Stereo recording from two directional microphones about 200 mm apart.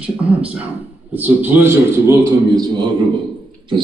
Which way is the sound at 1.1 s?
10° right (ahead or behind).